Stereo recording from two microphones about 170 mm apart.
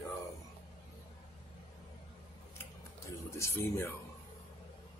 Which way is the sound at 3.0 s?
15° left (ahead or behind).